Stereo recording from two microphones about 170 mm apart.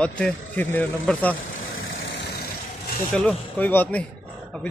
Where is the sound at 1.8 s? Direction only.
90° left.